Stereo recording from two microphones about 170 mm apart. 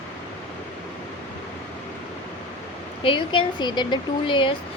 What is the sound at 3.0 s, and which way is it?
Speech, 30° left (ahead or behind).